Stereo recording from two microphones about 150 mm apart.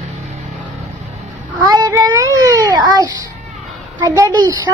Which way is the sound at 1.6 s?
25° right (ahead or behind).